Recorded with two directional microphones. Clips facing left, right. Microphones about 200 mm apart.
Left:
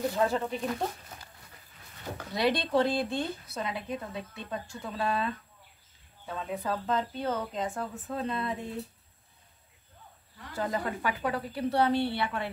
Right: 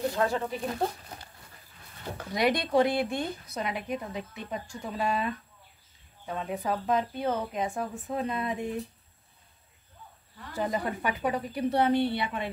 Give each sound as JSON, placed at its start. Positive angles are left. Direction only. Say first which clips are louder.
{"t": 0.1, "sound": "speech", "louder": "even", "side_deg": 0}
{"t": 2.3, "sound": "a woman's voice", "louder": "right 2 dB", "side_deg": -15}
{"t": 10.5, "sound": "a woman's voice", "louder": "right 2 dB", "side_deg": -15}